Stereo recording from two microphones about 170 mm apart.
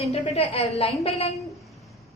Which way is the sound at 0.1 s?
35° left (ahead or behind).